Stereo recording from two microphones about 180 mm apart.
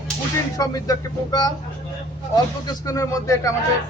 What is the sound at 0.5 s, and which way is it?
Speech, 20° left (ahead or behind).